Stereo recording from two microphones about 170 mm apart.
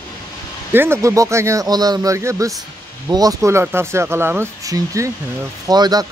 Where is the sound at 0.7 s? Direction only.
15° right (ahead or behind).